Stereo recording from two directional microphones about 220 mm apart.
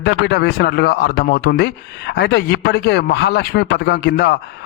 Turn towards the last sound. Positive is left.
turn(degrees=50)  # may be behind; listen again after turning